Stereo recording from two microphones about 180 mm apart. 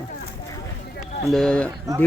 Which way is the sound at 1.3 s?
5° left (ahead or behind).